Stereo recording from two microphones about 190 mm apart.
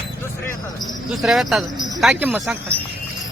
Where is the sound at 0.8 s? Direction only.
Centre (ahead or behind).